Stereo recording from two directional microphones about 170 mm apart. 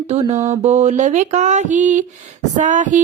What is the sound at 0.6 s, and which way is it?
Female singing, 45° right (ahead or behind).